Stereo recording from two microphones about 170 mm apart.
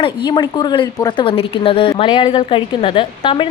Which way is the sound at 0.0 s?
30° left (ahead or behind).